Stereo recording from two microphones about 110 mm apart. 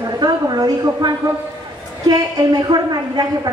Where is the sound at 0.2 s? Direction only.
40° right (ahead or behind).